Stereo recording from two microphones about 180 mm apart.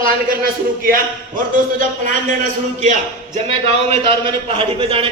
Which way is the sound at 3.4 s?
35° right (ahead or behind).